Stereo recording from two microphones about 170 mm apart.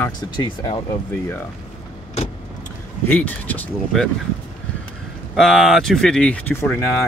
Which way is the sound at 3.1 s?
10° left (ahead or behind).